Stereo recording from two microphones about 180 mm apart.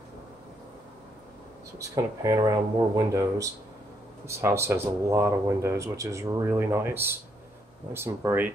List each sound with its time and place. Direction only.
1.8 s speech: 20° right (ahead or behind)